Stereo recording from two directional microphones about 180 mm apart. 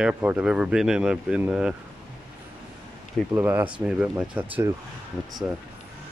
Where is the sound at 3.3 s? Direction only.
10° right (ahead or behind).